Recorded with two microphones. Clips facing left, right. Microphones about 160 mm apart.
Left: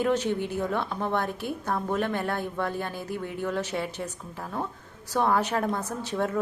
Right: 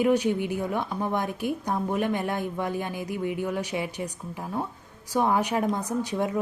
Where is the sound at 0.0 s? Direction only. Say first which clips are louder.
Right 3 dB; 10° right (ahead or behind).